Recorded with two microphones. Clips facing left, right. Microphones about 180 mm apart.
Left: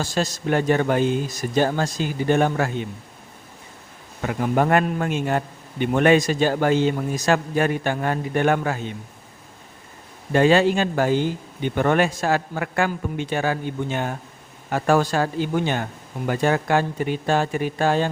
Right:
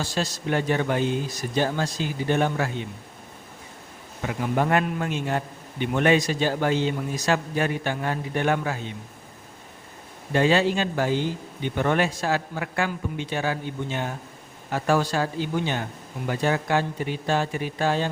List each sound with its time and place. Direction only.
0.0 s a man's voice: 45° left (ahead or behind)
4.2 s a man's voice: 50° left (ahead or behind)
10.3 s a man's voice: 50° left (ahead or behind)